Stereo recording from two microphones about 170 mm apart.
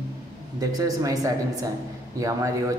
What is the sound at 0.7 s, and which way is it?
Speech, 20° right (ahead or behind).